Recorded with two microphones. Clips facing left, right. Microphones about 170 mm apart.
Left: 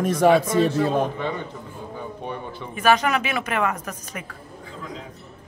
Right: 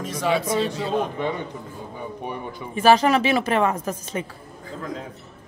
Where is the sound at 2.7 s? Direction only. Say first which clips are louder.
Right 3 dB; 30° right (ahead or behind).